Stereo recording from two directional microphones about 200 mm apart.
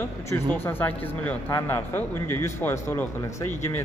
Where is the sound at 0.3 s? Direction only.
10° left (ahead or behind).